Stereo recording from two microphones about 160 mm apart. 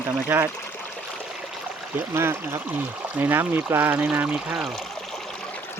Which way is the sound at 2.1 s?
15° right (ahead or behind).